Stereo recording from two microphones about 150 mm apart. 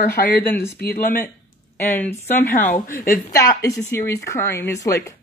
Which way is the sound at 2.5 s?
60° left (ahead or behind).